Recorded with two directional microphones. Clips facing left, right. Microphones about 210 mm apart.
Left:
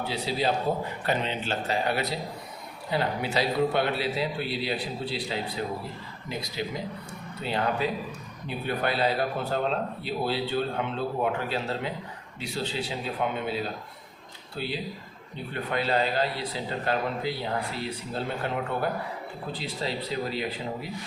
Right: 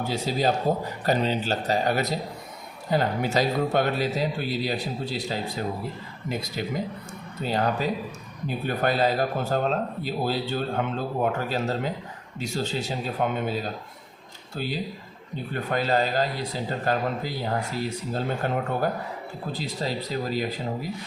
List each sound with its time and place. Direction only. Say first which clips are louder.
0.0 s a man's voice: right 3 dB; 45° right (ahead or behind)